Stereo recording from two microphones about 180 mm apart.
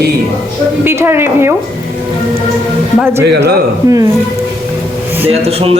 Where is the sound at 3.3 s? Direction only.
70° right (ahead or behind).